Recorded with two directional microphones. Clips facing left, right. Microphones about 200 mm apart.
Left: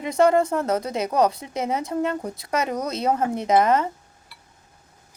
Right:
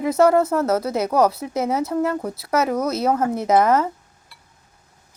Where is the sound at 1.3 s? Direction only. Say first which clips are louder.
Right 4 dB; 5° right (ahead or behind).